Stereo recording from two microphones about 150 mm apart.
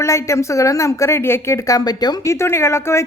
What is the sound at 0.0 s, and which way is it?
A woman's voice, 20° left (ahead or behind).